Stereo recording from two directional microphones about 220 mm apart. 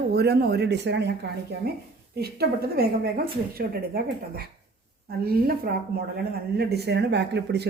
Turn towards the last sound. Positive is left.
turn(degrees=-50)  # may be behind; listen again after turning